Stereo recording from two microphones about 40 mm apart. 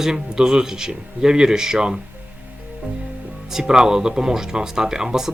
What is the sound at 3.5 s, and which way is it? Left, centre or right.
Speech, centre.